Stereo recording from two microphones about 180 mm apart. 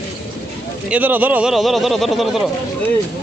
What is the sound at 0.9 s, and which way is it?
Speech, 10° right (ahead or behind).